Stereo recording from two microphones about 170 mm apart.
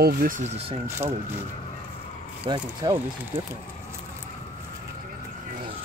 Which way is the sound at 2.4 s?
25° right (ahead or behind).